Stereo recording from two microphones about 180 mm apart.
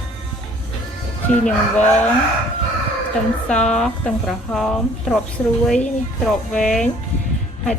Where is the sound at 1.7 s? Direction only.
10° left (ahead or behind).